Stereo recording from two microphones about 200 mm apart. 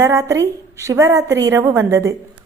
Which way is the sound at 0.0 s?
15° right (ahead or behind).